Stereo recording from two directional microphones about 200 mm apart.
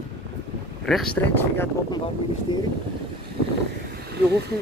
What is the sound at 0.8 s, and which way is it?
Speech, centre (ahead or behind).